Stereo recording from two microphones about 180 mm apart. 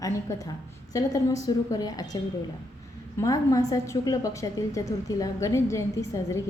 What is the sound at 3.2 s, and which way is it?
A woman's voice, 20° left (ahead or behind).